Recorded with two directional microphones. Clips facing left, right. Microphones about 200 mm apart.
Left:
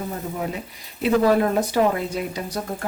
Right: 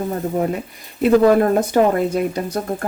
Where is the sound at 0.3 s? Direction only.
45° right (ahead or behind).